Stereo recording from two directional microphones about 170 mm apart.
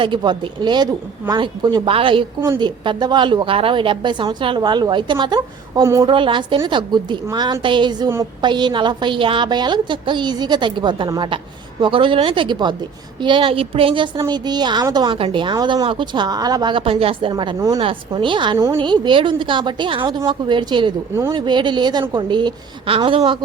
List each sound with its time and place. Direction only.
0.0 s a woman's voice: 25° right (ahead or behind)
6.1 s a woman's voice: 30° right (ahead or behind)